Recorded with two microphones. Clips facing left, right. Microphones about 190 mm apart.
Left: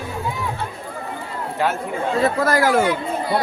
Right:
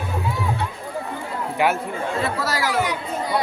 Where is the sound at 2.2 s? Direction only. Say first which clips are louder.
Left 6 dB; 50° left (ahead or behind).